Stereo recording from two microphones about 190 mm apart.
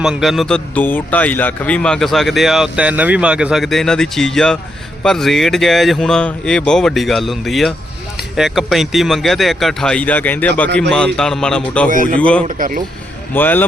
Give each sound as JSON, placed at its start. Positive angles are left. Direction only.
{"t": 0.0, "sound": "speech", "side_deg": 0}
{"t": 12.5, "sound": "speech", "side_deg": -45}
{"t": 13.3, "sound": "speech", "side_deg": 10}